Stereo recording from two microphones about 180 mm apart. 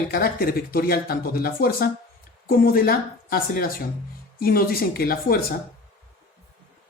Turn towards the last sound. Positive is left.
turn(degrees=55)  # may be behind; listen again after turning